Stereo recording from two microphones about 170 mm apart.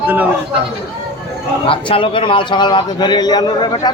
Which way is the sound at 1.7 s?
30° left (ahead or behind).